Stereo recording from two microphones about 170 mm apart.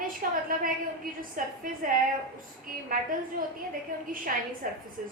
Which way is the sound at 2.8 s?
55° right (ahead or behind).